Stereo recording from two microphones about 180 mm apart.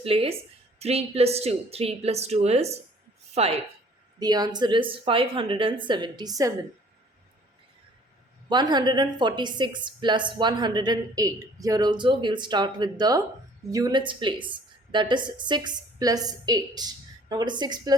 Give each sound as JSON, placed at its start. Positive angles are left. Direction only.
{"t": 0.0, "sound": "speech", "side_deg": -30}
{"t": 4.2, "sound": "a woman's voice", "side_deg": -20}
{"t": 8.4, "sound": "a woman's voice", "side_deg": -25}